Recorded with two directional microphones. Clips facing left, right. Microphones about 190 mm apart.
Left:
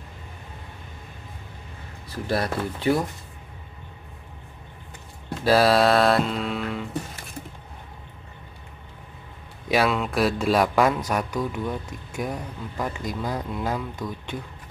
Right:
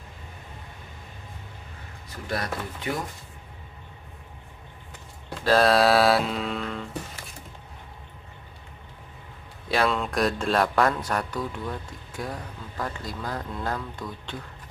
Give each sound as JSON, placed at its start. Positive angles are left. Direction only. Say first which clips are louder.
{"t": 2.0, "sound": "speech", "louder": "left 5 dB", "side_deg": 30}
{"t": 5.4, "sound": "music", "louder": "left 1 dB", "side_deg": 5}
{"t": 9.7, "sound": "music", "louder": "left 2 dB", "side_deg": 10}
{"t": 11.1, "sound": "speech", "louder": "left 3 dB", "side_deg": 10}